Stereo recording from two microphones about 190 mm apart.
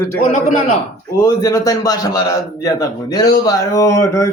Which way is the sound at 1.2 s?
20° left (ahead or behind).